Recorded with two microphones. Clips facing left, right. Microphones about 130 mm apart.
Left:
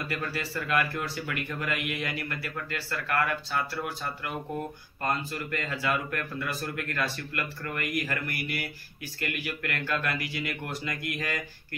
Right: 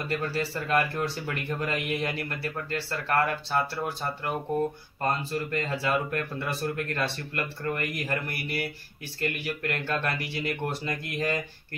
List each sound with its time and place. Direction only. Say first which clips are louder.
0.0 s speech: right 4 dB; 30° right (ahead or behind)
5.5 s speech: right 1 dB; 30° right (ahead or behind)